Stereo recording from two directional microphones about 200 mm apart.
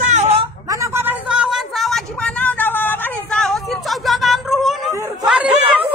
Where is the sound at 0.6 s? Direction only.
15° right (ahead or behind).